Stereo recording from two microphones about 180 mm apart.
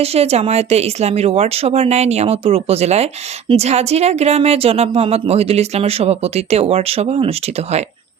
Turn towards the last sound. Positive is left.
turn(degrees=-35)  # may be behind; listen again after turning